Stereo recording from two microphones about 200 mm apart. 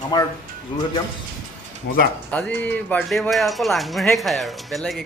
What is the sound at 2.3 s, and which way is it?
Speech, 5° left (ahead or behind).